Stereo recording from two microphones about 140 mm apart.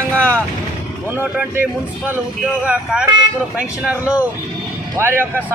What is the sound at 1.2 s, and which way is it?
A man's voice, 15° right (ahead or behind).